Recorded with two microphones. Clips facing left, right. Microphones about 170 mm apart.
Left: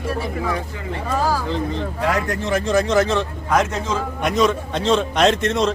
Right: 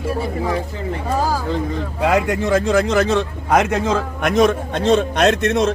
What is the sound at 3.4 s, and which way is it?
Speech, 75° right (ahead or behind).